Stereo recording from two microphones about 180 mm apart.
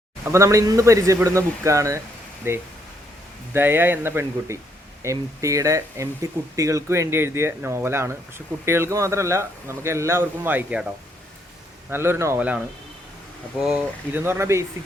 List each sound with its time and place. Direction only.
0.3 s speech: 15° right (ahead or behind)
11.9 s speech: 15° right (ahead or behind)